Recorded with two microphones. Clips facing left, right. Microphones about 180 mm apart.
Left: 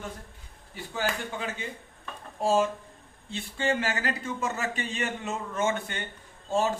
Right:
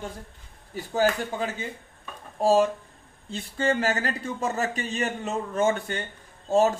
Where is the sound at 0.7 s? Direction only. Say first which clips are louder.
Right 6 dB; 40° right (ahead or behind).